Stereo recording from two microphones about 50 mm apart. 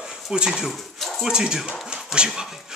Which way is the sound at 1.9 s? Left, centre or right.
Centre.